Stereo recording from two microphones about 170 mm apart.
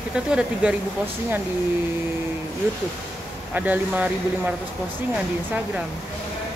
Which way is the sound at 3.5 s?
10° right (ahead or behind).